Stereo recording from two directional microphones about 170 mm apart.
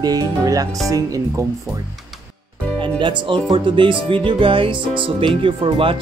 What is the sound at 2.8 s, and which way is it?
Speech, 30° right (ahead or behind).